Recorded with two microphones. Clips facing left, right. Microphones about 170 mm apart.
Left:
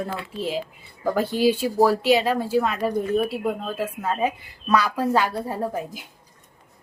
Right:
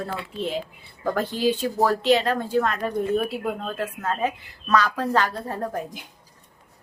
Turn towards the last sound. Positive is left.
turn(degrees=5)  # may be behind; listen again after turning